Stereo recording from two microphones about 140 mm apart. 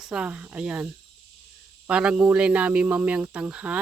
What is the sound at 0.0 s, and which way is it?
Speech, 5° right (ahead or behind).